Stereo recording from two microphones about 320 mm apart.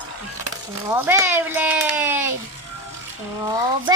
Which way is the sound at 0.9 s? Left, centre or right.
Centre.